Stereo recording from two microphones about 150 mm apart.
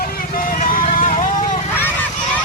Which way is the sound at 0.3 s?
70° left (ahead or behind).